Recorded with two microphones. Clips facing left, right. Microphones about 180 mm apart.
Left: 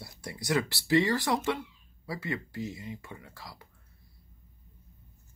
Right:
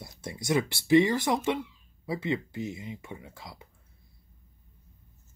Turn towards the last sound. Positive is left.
turn(degrees=-20)  # may be behind; listen again after turning